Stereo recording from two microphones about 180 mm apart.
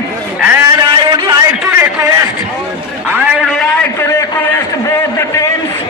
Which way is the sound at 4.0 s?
15° left (ahead or behind).